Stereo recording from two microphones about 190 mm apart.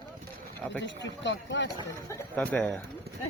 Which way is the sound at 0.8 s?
70° left (ahead or behind).